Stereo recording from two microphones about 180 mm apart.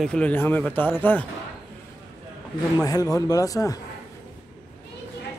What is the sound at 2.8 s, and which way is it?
Speech, 20° left (ahead or behind).